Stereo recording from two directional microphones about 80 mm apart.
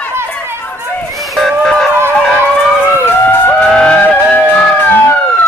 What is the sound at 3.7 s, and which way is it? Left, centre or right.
Music, centre.